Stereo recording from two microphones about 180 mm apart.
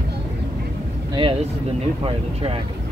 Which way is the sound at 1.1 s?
30° right (ahead or behind).